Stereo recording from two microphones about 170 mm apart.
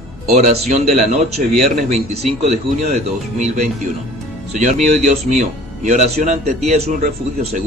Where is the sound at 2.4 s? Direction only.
40° right (ahead or behind).